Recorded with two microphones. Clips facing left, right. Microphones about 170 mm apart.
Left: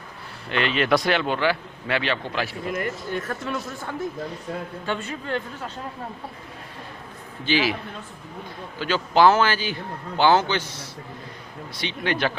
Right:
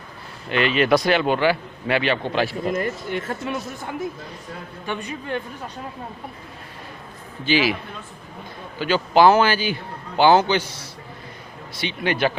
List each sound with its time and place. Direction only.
0.5 s a man's voice: 5° right (ahead or behind)
2.3 s a man's voice: 30° right (ahead or behind)
7.4 s a man's voice: 10° right (ahead or behind)
8.7 s a man's voice: 10° right (ahead or behind)